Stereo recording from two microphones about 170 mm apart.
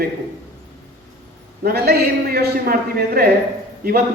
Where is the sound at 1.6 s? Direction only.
70° right (ahead or behind).